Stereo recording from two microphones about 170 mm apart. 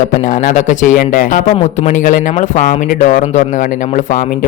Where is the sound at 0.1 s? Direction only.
50° left (ahead or behind).